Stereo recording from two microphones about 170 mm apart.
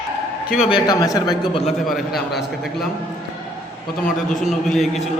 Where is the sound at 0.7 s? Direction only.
25° left (ahead or behind).